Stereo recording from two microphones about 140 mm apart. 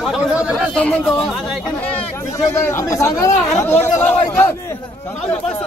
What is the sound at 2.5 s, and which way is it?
Speech, 20° left (ahead or behind).